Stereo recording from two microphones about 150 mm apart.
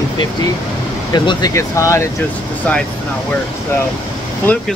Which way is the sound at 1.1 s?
25° left (ahead or behind).